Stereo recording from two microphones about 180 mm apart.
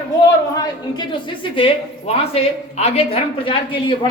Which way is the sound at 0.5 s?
20° left (ahead or behind).